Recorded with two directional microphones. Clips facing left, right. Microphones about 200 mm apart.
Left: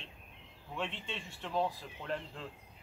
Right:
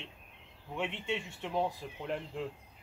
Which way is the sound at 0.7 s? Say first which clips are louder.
Right 5 dB; 15° right (ahead or behind).